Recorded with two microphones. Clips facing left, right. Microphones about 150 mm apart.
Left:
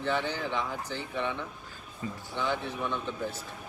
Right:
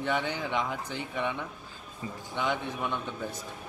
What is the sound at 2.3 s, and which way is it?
Speech, 15° right (ahead or behind).